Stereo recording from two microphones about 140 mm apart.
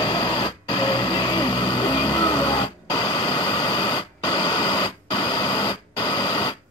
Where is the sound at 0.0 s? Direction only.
35° left (ahead or behind).